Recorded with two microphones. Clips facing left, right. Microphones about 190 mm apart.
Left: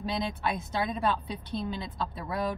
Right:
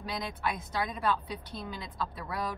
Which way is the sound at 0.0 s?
25° left (ahead or behind).